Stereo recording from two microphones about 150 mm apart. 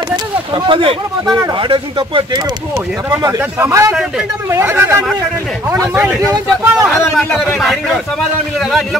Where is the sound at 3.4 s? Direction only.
15° right (ahead or behind).